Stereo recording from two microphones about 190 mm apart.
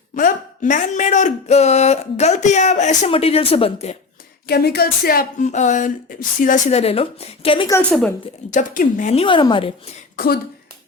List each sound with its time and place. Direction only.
0.2 s speech: 45° left (ahead or behind)
4.4 s speech: 55° left (ahead or behind); by 7.7 s 30° left (ahead or behind)
7.7 s a woman's voice: 5° left (ahead or behind)
8.4 s speech: 45° left (ahead or behind)